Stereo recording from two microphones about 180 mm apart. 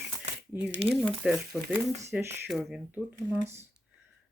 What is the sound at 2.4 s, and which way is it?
Speech, centre (ahead or behind).